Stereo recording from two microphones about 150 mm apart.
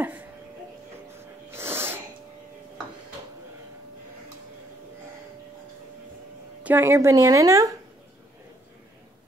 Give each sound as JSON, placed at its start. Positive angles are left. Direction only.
{"t": 0.0, "sound": "music", "side_deg": -10}
{"t": 1.5, "sound": "sneeze", "side_deg": -15}
{"t": 6.6, "sound": "speech", "side_deg": -15}